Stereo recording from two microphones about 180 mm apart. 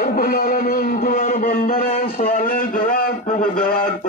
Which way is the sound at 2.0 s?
50° left (ahead or behind).